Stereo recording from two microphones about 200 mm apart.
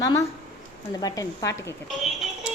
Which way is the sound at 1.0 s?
20° left (ahead or behind).